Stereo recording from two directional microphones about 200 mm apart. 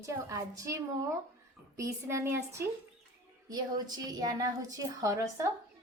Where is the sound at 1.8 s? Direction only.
15° right (ahead or behind).